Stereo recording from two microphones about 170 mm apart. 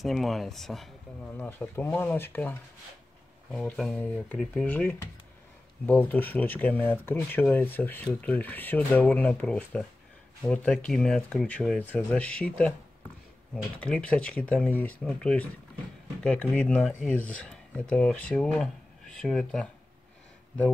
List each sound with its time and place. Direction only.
0.0 s speech: centre (ahead or behind)
3.6 s speech: 5° left (ahead or behind)
13.7 s speech: 5° left (ahead or behind)